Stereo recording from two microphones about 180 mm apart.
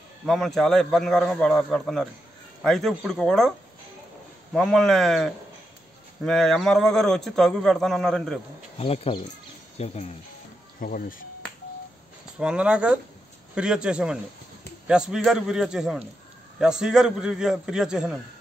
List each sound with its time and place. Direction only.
0.3 s a man's voice: centre (ahead or behind)
8.7 s speech: 35° left (ahead or behind)
10.8 s speech: 50° left (ahead or behind)
12.4 s a man's voice: 5° right (ahead or behind)